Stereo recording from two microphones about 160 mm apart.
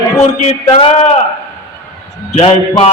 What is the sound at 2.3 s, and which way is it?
Speech, 40° left (ahead or behind).